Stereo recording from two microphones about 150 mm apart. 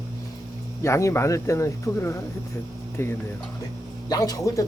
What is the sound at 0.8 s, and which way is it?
Speech, 20° left (ahead or behind).